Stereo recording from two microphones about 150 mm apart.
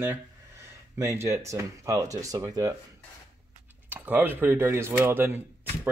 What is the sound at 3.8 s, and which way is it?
Speech, 10° right (ahead or behind).